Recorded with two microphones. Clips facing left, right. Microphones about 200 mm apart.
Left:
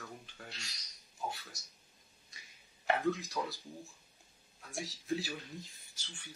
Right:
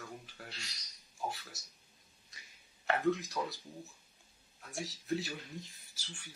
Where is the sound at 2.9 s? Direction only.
Centre (ahead or behind).